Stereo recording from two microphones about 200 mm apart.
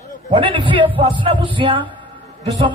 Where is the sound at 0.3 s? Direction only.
25° right (ahead or behind).